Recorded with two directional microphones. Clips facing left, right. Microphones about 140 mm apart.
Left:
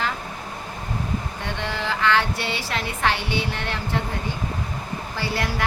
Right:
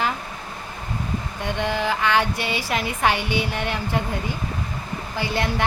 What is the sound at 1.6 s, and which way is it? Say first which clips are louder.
Speech: right 1 dB; 15° right (ahead or behind).